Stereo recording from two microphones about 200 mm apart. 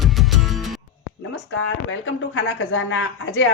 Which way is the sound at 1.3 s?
75° left (ahead or behind).